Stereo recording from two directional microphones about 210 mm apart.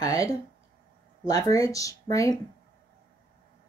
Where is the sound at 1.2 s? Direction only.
15° left (ahead or behind).